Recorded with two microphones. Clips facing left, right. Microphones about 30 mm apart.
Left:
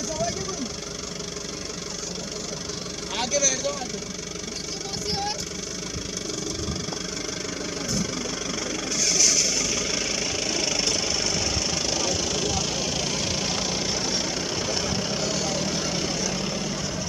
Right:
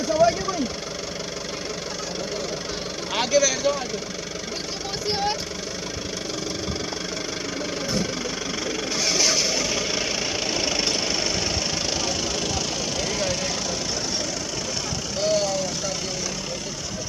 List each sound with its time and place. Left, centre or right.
0.1 s vehicle: right
3.2 s speech: centre
5.0 s vehicle: right
8.9 s vehicle: right; by 13.7 s centre
15.4 s vehicle: centre